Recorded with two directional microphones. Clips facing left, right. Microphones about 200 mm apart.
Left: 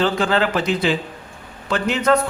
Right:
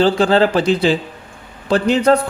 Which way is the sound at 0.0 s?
35° right (ahead or behind).